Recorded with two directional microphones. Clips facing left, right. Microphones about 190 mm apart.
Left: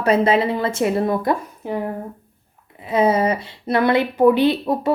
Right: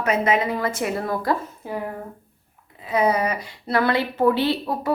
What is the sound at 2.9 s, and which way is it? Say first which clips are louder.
Speech: left 4 dB; 25° left (ahead or behind).